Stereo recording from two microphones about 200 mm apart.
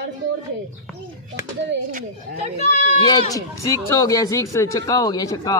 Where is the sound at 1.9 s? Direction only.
40° right (ahead or behind).